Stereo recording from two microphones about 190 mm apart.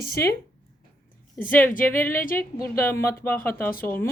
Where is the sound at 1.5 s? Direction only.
10° left (ahead or behind).